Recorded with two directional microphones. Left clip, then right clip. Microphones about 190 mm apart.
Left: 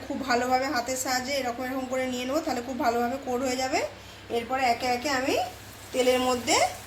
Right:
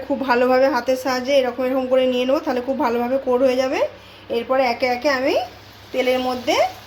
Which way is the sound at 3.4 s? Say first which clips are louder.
Right 10 dB; 45° right (ahead or behind).